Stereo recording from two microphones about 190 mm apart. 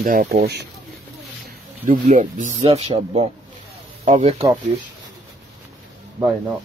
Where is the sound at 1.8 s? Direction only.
40° right (ahead or behind).